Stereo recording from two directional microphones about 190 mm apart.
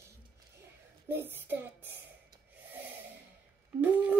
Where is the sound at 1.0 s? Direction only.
10° right (ahead or behind).